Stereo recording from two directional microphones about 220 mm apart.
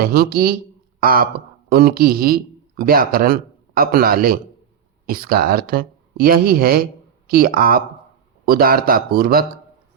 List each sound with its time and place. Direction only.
0.0 s speech: 45° right (ahead or behind)